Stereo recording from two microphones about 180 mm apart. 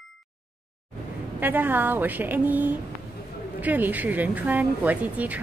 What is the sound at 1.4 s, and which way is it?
A woman's voice, 10° right (ahead or behind).